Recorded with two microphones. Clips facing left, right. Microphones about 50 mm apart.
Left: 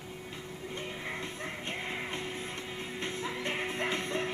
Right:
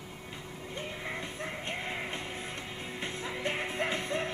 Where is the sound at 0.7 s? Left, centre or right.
Centre.